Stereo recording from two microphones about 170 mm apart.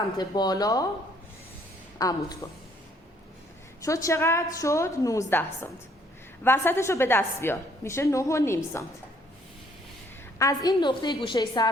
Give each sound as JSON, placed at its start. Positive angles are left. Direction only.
{"t": 0.2, "sound": "a woman's voice", "side_deg": 25}
{"t": 2.0, "sound": "a woman's voice", "side_deg": 20}
{"t": 3.8, "sound": "a woman's voice", "side_deg": 20}
{"t": 10.3, "sound": "a woman's voice", "side_deg": 20}